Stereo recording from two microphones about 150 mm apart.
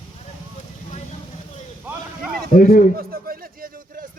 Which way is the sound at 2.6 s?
70° left (ahead or behind).